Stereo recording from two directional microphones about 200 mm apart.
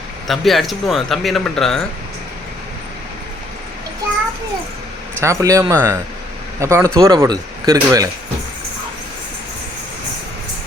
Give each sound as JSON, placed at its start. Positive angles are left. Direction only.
{"t": 0.3, "sound": "speech", "side_deg": 0}
{"t": 5.2, "sound": "speech", "side_deg": -15}